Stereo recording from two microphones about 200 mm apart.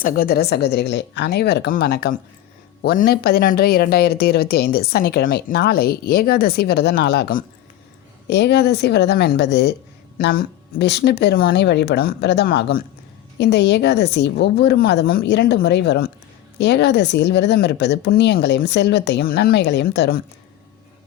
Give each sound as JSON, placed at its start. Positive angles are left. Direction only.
{"t": 0.0, "sound": "a woman's voice", "side_deg": 50}